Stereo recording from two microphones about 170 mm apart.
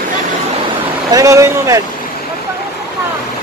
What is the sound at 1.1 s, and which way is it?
Speech, 20° right (ahead or behind).